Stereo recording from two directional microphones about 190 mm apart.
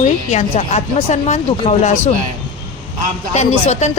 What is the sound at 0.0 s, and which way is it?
A woman's voice, 35° left (ahead or behind).